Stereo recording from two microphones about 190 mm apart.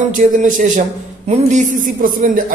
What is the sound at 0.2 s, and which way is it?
A man's voice, 45° right (ahead or behind).